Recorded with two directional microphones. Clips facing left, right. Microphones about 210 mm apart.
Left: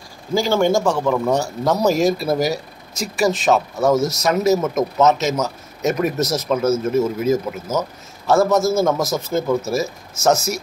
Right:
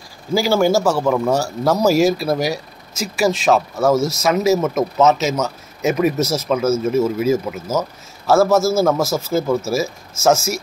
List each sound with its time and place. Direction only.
0.3 s a man's voice: 10° right (ahead or behind)